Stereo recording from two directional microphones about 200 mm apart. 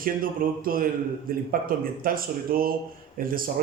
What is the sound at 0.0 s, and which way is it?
Speech, 45° right (ahead or behind).